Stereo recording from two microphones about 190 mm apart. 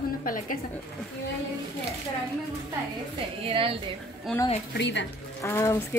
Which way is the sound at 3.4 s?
30° right (ahead or behind).